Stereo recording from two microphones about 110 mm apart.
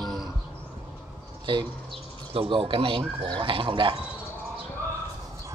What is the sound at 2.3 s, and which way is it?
Speech, 55° right (ahead or behind).